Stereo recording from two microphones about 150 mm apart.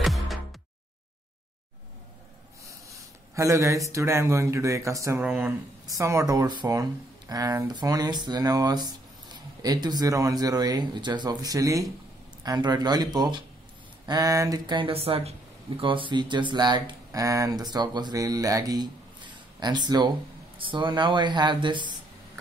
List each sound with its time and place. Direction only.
0.0 s music: centre (ahead or behind)
2.9 s speech: 20° right (ahead or behind)
5.2 s speech: 10° right (ahead or behind)
5.9 s speech: 20° right (ahead or behind)